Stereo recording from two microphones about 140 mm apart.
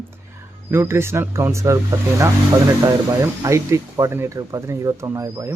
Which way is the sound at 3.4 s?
20° right (ahead or behind).